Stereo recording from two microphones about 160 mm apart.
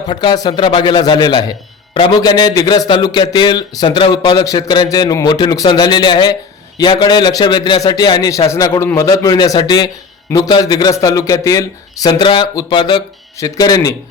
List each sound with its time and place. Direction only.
0.1 s speech: 25° left (ahead or behind)